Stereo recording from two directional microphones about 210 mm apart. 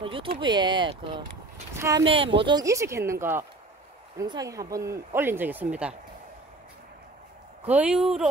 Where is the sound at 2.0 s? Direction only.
25° right (ahead or behind); by 5.9 s 5° right (ahead or behind).